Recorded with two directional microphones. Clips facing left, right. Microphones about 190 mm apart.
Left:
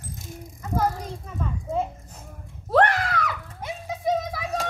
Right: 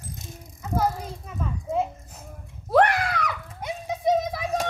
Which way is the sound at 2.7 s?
10° right (ahead or behind).